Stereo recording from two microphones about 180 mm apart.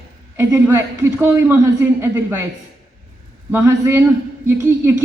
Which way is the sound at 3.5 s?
15° right (ahead or behind).